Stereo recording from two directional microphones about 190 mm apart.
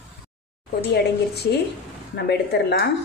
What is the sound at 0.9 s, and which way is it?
A woman's voice, 60° left (ahead or behind).